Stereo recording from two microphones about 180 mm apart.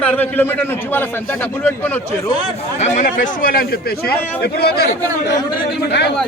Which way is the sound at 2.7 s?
40° left (ahead or behind).